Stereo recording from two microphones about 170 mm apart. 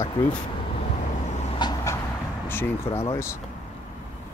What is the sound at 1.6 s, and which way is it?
Vehicle, 20° left (ahead or behind).